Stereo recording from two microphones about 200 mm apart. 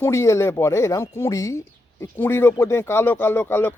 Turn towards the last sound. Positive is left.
turn(degrees=10)  # may be behind; listen again after turning